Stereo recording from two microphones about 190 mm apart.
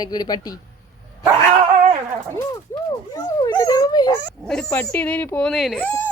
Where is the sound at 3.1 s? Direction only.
15° left (ahead or behind).